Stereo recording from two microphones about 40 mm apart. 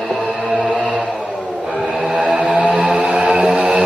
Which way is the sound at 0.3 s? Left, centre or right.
Right.